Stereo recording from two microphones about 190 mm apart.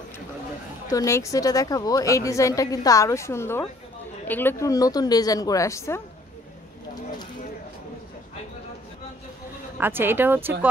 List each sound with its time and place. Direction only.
0.8 s a woman's voice: 15° left (ahead or behind)
9.8 s speech: 10° right (ahead or behind)